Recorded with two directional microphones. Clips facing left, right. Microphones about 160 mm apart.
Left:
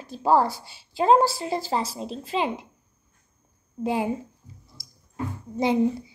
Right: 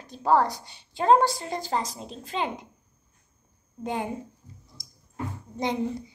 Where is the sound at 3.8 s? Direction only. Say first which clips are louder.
Left 5 dB; 5° left (ahead or behind).